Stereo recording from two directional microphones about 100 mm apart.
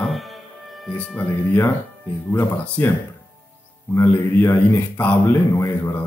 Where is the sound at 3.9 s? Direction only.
20° left (ahead or behind).